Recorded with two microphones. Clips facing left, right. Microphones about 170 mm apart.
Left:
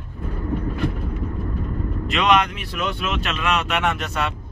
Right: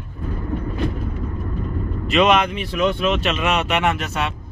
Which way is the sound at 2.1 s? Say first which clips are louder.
Right 3 dB; centre (ahead or behind).